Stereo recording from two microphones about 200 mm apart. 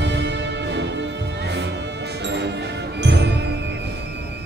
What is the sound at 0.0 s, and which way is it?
Music, 60° right (ahead or behind).